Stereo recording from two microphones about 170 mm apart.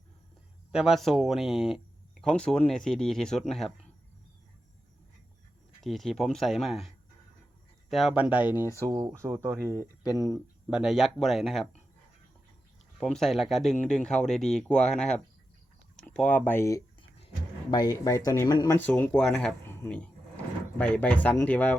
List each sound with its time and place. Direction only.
0.7 s speech: 5° right (ahead or behind)
5.8 s speech: centre (ahead or behind)
8.7 s speech: 15° right (ahead or behind)
10.7 s speech: 5° right (ahead or behind)
13.0 s speech: centre (ahead or behind); by 16.8 s 15° left (ahead or behind)
17.0 s a sound: 35° left (ahead or behind)
18.3 s speech: 20° left (ahead or behind)
18.8 s speech: 10° left (ahead or behind)